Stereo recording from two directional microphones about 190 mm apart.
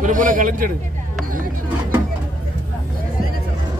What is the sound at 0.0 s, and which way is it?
Speech, 45° right (ahead or behind).